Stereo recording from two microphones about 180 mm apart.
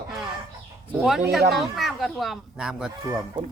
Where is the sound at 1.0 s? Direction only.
Centre (ahead or behind).